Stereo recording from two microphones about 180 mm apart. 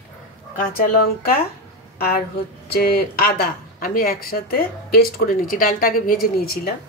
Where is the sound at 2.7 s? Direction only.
55° left (ahead or behind).